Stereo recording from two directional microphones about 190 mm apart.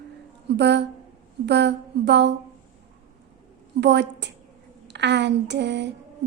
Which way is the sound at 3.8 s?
65° right (ahead or behind).